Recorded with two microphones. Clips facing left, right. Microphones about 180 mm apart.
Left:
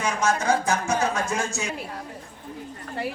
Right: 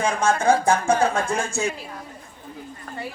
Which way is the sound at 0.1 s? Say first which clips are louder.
Right 1 dB; 55° right (ahead or behind).